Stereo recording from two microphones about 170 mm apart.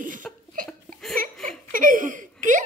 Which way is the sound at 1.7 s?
55° right (ahead or behind).